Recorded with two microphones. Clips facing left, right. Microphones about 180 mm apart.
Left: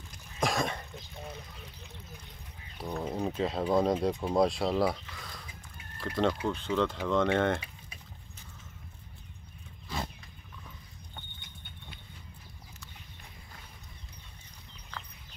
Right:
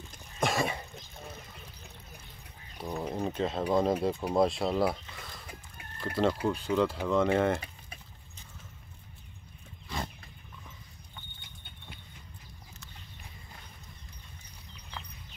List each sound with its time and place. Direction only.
0.4 s cough: 5° right (ahead or behind)
2.8 s speech: centre (ahead or behind)